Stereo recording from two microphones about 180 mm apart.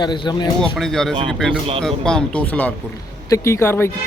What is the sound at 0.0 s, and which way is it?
Speech, 25° left (ahead or behind).